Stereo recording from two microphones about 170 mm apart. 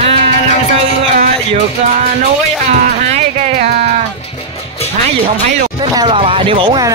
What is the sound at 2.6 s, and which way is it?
Music, 45° right (ahead or behind).